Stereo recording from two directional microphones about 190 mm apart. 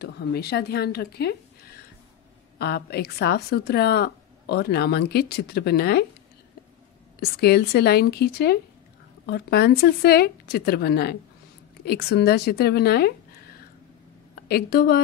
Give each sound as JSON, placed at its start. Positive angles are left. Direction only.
{"t": 0.0, "sound": "speech", "side_deg": 60}
{"t": 2.6, "sound": "speech", "side_deg": 55}
{"t": 7.2, "sound": "speech", "side_deg": 55}
{"t": 14.3, "sound": "a woman's voice", "side_deg": 55}